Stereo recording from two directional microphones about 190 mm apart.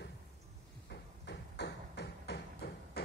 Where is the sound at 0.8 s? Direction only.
60° left (ahead or behind).